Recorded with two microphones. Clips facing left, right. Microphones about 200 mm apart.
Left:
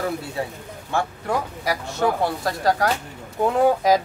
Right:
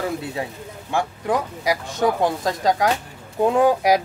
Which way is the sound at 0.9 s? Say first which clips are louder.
Right 2 dB; 15° right (ahead or behind).